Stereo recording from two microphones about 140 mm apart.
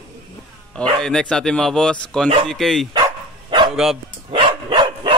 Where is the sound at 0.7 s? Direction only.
5° left (ahead or behind).